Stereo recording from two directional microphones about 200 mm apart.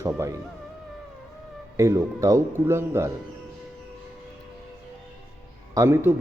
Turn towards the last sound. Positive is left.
turn(degrees=-15)  # may be behind; listen again after turning